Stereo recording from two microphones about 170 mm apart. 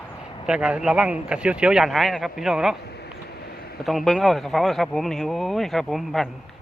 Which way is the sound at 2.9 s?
70° left (ahead or behind).